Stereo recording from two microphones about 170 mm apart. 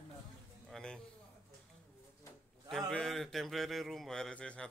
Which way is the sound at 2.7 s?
5° left (ahead or behind).